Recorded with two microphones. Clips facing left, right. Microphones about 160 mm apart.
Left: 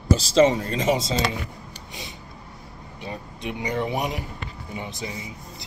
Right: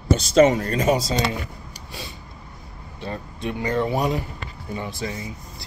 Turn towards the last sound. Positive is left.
turn(degrees=20)  # may be behind; listen again after turning